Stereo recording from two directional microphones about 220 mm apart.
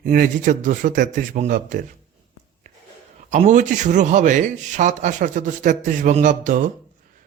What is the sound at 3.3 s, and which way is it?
Speech, 35° right (ahead or behind).